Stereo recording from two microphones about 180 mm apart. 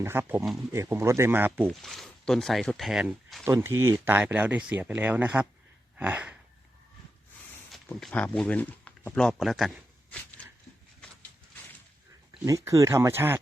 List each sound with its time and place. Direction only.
0.0 s speech: 10° right (ahead or behind)
3.4 s speech: 15° right (ahead or behind)
6.0 s a sound: 10° right (ahead or behind)
7.7 s speech: centre (ahead or behind)
12.5 s speech: 20° right (ahead or behind)